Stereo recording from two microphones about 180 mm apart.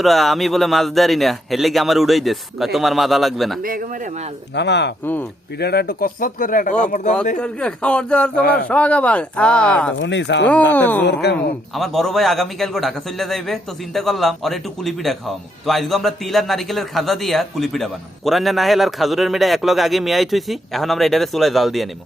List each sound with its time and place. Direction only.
0.0 s a man's voice: centre (ahead or behind)
3.6 s speech: 50° right (ahead or behind)
4.5 s speech: 75° left (ahead or behind)
5.5 s speech: 60° left (ahead or behind); by 7.1 s 45° left (ahead or behind)
7.3 s a man's voice: 5° left (ahead or behind)
8.4 s speech: 60° left (ahead or behind)
8.7 s speech: 5° left (ahead or behind)
10.0 s speech: 85° left
10.5 s speech: 10° left (ahead or behind)
11.0 s speech: 70° left (ahead or behind)
11.7 s a man's voice: centre (ahead or behind)